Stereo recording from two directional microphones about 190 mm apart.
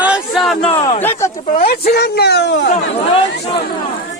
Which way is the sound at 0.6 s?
30° left (ahead or behind).